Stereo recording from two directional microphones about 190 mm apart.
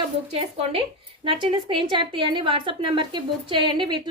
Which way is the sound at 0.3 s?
30° right (ahead or behind).